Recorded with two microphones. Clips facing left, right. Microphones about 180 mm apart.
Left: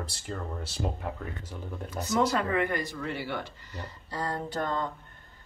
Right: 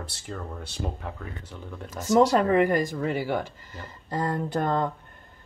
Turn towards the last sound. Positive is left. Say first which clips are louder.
# right 5 dB
turn(degrees=-50)  # may be behind; listen again after turning